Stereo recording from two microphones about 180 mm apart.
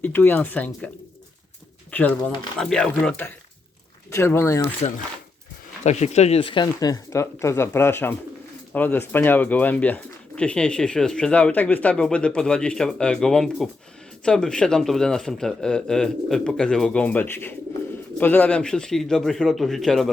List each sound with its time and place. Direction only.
0.0 s speech: 10° left (ahead or behind)
1.9 s speech: 10° left (ahead or behind)
4.8 s speech: 35° left (ahead or behind); by 20.1 s centre (ahead or behind)